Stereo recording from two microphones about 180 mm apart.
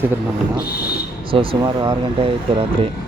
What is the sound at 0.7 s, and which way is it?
Speech, 60° left (ahead or behind).